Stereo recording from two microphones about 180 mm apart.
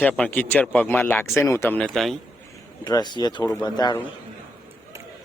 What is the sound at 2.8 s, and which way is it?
Speech, 20° left (ahead or behind).